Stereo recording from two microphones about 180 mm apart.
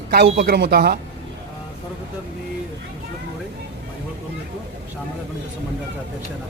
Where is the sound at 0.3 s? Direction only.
65° right (ahead or behind).